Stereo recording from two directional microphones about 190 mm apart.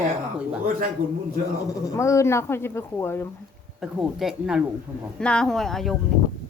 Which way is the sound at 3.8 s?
Centre (ahead or behind).